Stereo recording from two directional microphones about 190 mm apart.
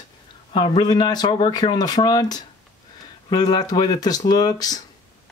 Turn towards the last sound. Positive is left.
turn(degrees=20)  # may be behind; listen again after turning